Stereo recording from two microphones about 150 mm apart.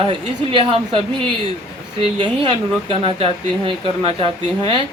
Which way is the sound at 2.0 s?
35° right (ahead or behind).